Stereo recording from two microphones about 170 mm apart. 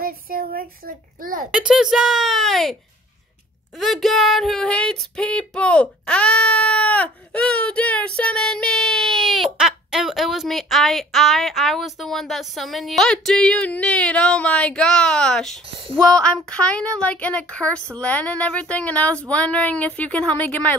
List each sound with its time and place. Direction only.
0.0 s a child's voice: 60° right (ahead or behind)
1.7 s female singing: centre (ahead or behind)
16.0 s speech: 5° left (ahead or behind)